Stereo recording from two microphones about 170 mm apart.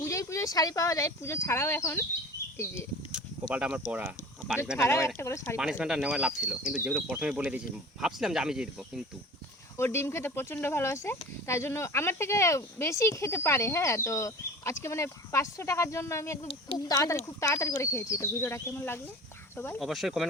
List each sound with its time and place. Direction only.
0.0 s speech: 15° left (ahead or behind)
3.5 s speech: 5° right (ahead or behind)
4.8 s speech: 15° left (ahead or behind)
5.8 s speech: 5° right (ahead or behind)
9.7 s speech: 15° left (ahead or behind)
16.4 s speech: 30° left (ahead or behind); by 18.9 s 15° left (ahead or behind)
19.8 s speech: centre (ahead or behind)